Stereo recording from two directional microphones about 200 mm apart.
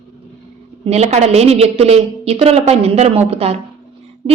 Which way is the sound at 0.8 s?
30° right (ahead or behind).